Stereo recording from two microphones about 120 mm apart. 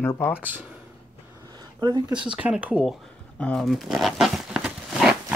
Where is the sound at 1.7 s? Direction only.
40° right (ahead or behind).